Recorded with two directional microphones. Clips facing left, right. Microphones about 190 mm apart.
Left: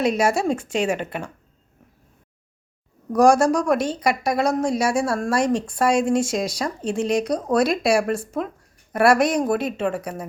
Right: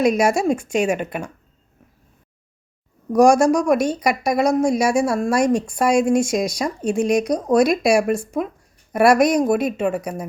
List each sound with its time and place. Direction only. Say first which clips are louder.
0.0 s speech: right 3 dB; 15° right (ahead or behind)
3.1 s speech: right 2 dB; 15° right (ahead or behind)